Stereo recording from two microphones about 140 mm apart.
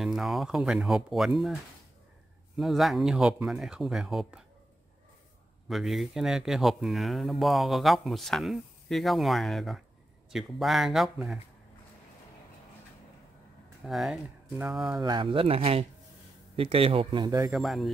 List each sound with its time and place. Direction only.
0.0 s speech: centre (ahead or behind)
5.7 s speech: centre (ahead or behind)
13.8 s speech: centre (ahead or behind)
15.0 s a man's voice: 30° right (ahead or behind)
17.5 s speech: centre (ahead or behind)